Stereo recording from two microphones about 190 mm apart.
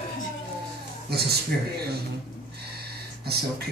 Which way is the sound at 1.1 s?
55° right (ahead or behind).